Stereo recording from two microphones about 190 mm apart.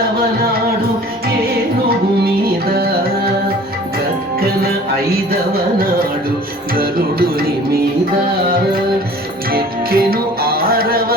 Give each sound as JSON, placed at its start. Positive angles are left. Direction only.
{"t": 6.7, "sound": "music", "side_deg": -55}
{"t": 9.5, "sound": "music", "side_deg": -55}